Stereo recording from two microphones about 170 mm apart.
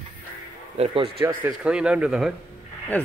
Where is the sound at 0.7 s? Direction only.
35° right (ahead or behind).